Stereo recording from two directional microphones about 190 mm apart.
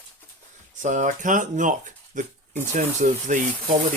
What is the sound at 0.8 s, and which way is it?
Speech, 40° right (ahead or behind).